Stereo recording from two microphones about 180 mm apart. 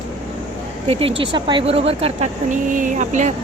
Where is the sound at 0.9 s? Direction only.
35° right (ahead or behind).